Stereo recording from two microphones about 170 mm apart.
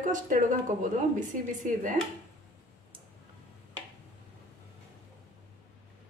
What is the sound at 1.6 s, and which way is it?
Speech, 50° right (ahead or behind).